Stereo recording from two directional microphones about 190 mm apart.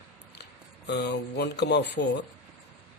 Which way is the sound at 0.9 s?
60° left (ahead or behind).